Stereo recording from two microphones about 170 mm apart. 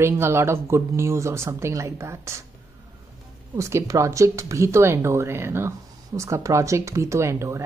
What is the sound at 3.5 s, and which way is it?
Speech, 15° right (ahead or behind).